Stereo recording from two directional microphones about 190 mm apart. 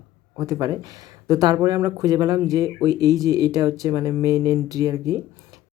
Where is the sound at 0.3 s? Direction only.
20° right (ahead or behind).